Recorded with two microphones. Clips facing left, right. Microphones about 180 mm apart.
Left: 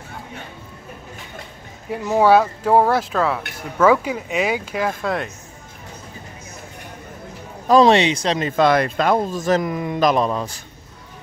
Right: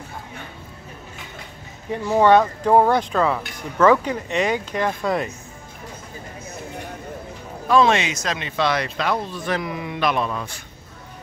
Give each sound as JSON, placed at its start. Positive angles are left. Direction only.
{"t": 1.9, "sound": "speech", "side_deg": 5}
{"t": 7.6, "sound": "a man's voice", "side_deg": 35}
{"t": 8.4, "sound": "speech", "side_deg": 45}